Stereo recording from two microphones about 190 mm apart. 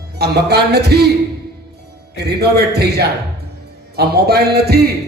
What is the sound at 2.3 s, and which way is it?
A man's voice, 55° right (ahead or behind).